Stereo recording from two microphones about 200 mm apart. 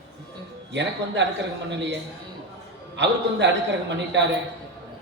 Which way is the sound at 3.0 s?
60° right (ahead or behind).